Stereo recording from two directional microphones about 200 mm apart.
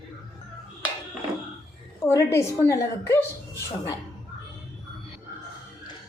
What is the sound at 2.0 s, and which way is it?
A woman's voice, 15° left (ahead or behind).